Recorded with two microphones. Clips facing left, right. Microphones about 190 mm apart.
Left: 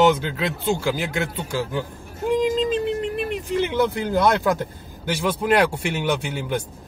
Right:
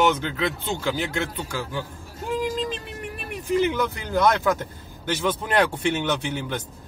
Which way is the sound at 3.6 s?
25° left (ahead or behind).